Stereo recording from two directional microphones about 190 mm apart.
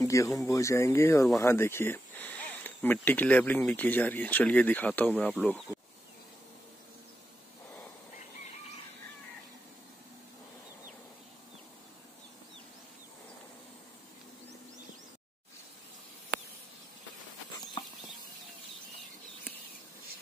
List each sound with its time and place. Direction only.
0.0 s speech: 15° left (ahead or behind)